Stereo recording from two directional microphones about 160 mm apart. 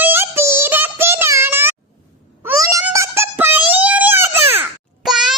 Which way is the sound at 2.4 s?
20° right (ahead or behind).